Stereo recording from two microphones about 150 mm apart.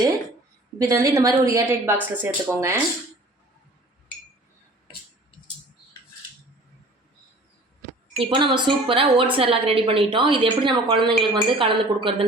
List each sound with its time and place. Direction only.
0.8 s a woman's voice: 20° right (ahead or behind)
8.2 s a woman's voice: 35° right (ahead or behind)